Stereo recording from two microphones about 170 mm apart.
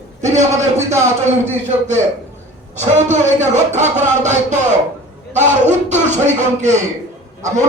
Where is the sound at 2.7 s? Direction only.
45° right (ahead or behind).